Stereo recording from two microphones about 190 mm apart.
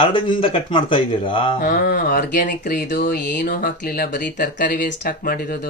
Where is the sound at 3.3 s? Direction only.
45° left (ahead or behind).